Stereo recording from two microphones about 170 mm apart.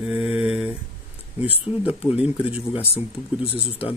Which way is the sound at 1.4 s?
10° right (ahead or behind).